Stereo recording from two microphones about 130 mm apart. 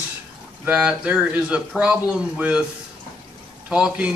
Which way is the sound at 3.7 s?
5° right (ahead or behind).